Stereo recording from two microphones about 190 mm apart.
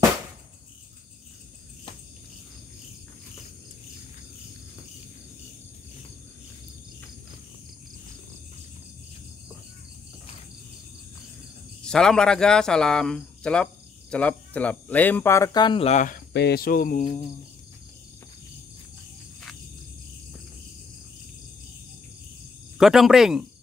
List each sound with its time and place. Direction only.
11.8 s speech: 5° left (ahead or behind); by 16.2 s 40° left (ahead or behind)
16.3 s cricket: 55° left (ahead or behind); by 17.3 s 35° left (ahead or behind)
22.8 s speech: centre (ahead or behind)